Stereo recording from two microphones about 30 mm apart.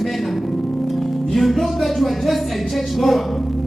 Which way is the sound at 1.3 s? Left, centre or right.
Centre.